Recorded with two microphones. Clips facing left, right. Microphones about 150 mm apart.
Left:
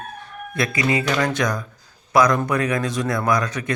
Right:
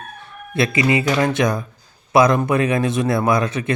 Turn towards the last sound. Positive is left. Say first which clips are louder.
# right 3 dB
turn(degrees=-25)  # may be behind; listen again after turning